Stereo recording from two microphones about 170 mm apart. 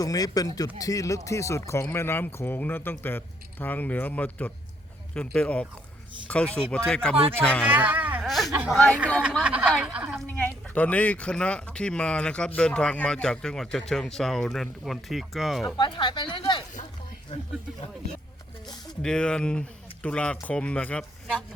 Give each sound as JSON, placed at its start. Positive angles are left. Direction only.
{"t": 0.0, "sound": "speech", "side_deg": 20}
{"t": 7.7, "sound": "speech", "side_deg": -10}
{"t": 8.3, "sound": "speech", "side_deg": 0}
{"t": 9.4, "sound": "a woman's voice", "side_deg": -10}
{"t": 10.2, "sound": "speech", "side_deg": 10}
{"t": 15.8, "sound": "speech", "side_deg": 25}
{"t": 19.0, "sound": "speech", "side_deg": 5}